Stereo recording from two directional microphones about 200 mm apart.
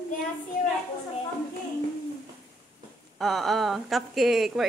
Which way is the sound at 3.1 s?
Centre (ahead or behind).